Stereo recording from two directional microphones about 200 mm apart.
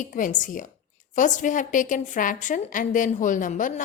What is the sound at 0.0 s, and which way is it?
A woman's voice, 40° left (ahead or behind).